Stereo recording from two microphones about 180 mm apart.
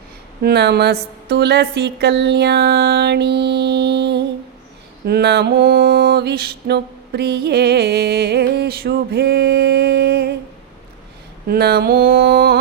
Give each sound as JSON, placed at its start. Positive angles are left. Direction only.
{"t": 0.4, "sound": "mantra", "side_deg": -65}
{"t": 1.3, "sound": "music", "side_deg": -70}
{"t": 5.0, "sound": "mantra", "side_deg": -65}
{"t": 11.4, "sound": "mantra", "side_deg": -60}